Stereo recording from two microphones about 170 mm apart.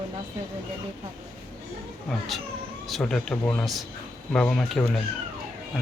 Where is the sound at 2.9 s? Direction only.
Centre (ahead or behind).